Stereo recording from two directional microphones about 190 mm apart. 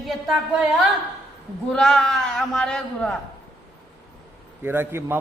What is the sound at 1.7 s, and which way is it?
A man's voice, centre (ahead or behind).